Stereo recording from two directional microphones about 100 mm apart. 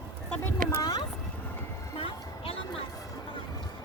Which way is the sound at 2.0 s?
75° left (ahead or behind).